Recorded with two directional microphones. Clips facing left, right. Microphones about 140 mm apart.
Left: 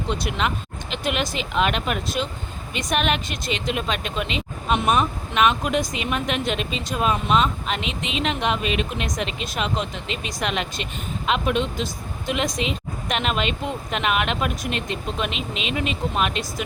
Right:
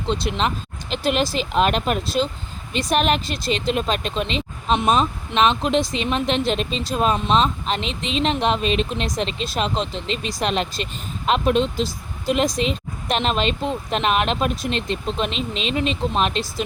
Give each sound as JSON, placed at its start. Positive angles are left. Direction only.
{"t": 0.1, "sound": "speech", "side_deg": -30}